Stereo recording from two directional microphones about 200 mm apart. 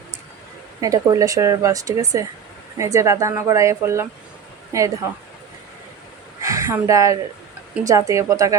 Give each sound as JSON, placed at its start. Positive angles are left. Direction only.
{"t": 0.8, "sound": "speech", "side_deg": -15}
{"t": 6.4, "sound": "speech", "side_deg": -15}